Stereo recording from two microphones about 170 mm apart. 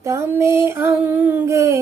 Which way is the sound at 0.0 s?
15° right (ahead or behind).